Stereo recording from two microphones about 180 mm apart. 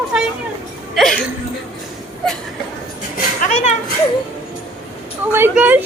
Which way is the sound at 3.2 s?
40° left (ahead or behind).